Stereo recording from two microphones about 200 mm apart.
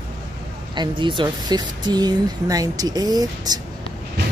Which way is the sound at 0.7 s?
25° right (ahead or behind).